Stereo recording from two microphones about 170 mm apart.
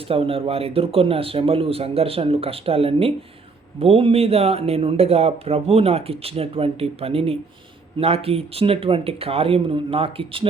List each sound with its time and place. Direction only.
0.1 s speech: 35° right (ahead or behind)